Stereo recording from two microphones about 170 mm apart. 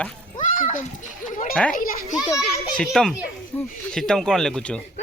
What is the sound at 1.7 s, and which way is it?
Speech, 55° left (ahead or behind).